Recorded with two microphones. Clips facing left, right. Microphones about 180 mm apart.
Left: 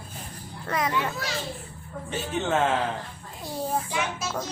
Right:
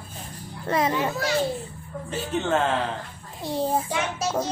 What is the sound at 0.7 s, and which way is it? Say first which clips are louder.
Speech: right 4 dB; 30° right (ahead or behind).